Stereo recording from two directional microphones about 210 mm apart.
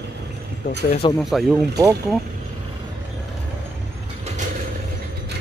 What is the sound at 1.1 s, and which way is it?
Speech, centre (ahead or behind).